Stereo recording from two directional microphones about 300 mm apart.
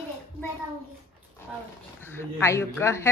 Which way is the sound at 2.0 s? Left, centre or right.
Centre.